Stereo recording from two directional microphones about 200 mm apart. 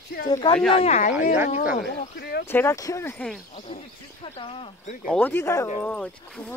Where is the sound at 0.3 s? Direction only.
25° left (ahead or behind).